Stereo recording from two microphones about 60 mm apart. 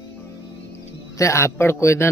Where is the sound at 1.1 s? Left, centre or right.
Left.